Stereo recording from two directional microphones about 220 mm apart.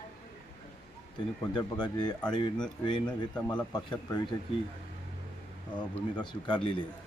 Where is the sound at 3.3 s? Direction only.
5° left (ahead or behind).